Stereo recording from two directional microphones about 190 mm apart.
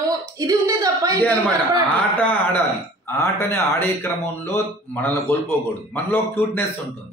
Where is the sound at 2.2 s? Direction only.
10° left (ahead or behind).